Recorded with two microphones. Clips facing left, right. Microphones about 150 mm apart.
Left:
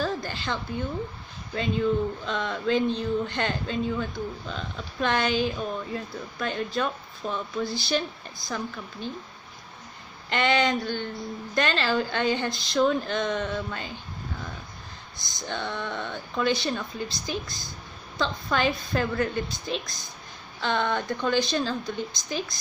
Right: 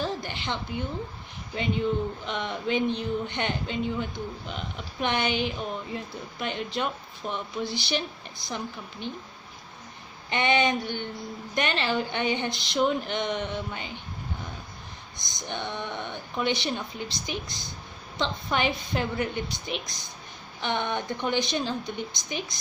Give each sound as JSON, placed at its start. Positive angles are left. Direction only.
{"t": 0.0, "sound": "a sound", "side_deg": -20}
{"t": 2.2, "sound": "speech", "side_deg": -20}
{"t": 10.3, "sound": "speech", "side_deg": -20}
{"t": 15.1, "sound": "speech", "side_deg": -20}